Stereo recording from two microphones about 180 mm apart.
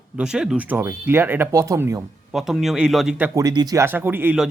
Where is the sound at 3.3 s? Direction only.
20° right (ahead or behind).